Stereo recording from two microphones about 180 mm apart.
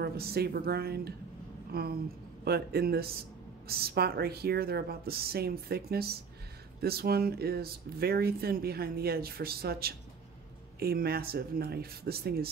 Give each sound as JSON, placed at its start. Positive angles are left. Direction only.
{"t": 0.0, "sound": "speech", "side_deg": -60}